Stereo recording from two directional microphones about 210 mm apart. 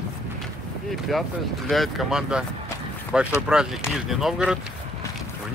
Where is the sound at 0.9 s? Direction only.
Centre (ahead or behind).